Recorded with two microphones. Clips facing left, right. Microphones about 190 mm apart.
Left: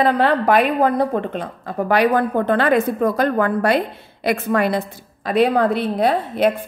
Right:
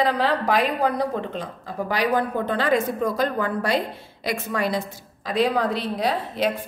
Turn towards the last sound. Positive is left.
turn(degrees=55)  # may be behind; listen again after turning